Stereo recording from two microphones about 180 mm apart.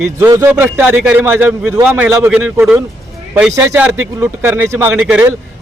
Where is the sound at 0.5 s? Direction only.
10° right (ahead or behind).